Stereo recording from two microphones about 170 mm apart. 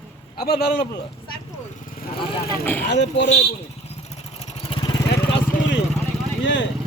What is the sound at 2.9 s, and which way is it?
Speech, 90° left.